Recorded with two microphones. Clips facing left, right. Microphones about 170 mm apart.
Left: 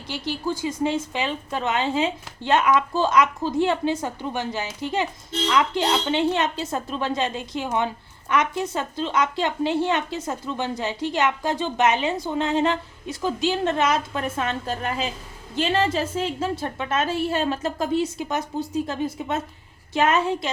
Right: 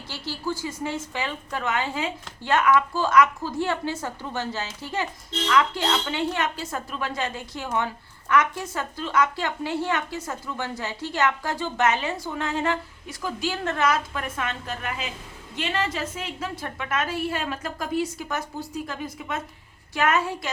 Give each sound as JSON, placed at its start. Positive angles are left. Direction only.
{"t": 0.1, "sound": "a woman's voice", "side_deg": 20}